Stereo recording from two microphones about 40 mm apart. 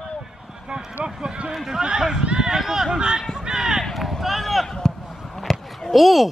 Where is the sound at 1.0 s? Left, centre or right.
Right.